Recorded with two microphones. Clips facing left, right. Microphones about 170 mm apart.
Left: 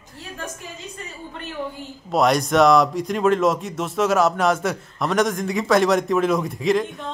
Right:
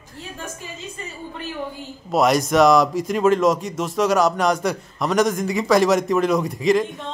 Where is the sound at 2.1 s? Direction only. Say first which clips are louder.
Right 1 dB; centre (ahead or behind).